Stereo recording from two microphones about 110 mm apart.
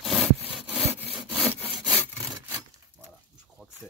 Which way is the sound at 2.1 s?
35° right (ahead or behind).